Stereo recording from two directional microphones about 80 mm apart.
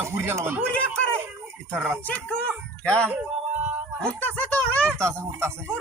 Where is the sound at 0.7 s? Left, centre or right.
Centre.